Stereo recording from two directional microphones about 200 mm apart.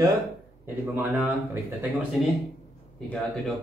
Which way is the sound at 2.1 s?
Centre (ahead or behind).